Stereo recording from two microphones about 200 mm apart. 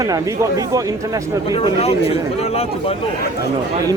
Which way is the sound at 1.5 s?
30° left (ahead or behind).